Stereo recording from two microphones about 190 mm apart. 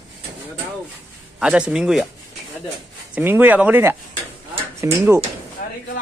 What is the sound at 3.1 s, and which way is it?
Speech, 10° right (ahead or behind).